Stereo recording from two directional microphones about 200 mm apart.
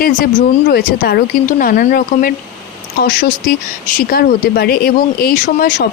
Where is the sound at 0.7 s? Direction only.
50° left (ahead or behind).